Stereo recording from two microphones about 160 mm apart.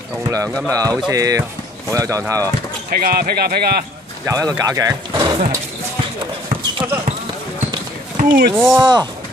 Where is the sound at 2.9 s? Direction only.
70° right (ahead or behind).